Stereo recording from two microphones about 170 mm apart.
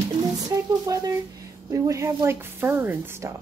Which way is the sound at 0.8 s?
20° right (ahead or behind).